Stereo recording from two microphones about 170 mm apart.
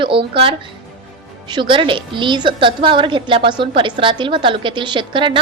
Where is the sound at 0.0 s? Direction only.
30° right (ahead or behind).